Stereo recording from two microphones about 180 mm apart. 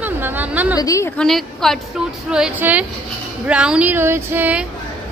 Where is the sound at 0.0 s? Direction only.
10° right (ahead or behind).